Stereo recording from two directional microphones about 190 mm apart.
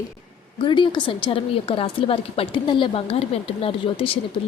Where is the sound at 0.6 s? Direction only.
25° left (ahead or behind).